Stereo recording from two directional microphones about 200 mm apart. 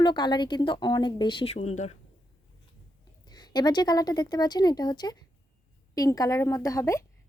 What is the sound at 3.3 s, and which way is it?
A woman's voice, 20° left (ahead or behind).